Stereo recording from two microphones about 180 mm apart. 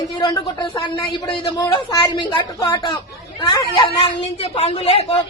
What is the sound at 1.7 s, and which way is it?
Speech, 25° left (ahead or behind).